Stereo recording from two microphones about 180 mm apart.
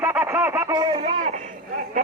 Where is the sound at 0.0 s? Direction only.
10° right (ahead or behind); by 1.1 s 30° right (ahead or behind).